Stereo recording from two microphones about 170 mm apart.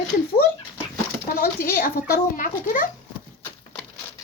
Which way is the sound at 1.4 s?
60° left (ahead or behind).